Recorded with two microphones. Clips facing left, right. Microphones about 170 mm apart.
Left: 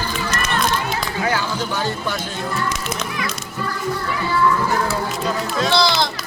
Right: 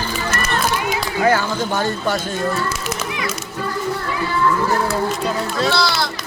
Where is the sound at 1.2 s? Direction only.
50° right (ahead or behind).